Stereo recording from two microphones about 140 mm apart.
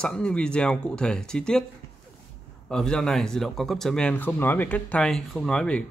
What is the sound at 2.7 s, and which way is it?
Speech, 5° left (ahead or behind).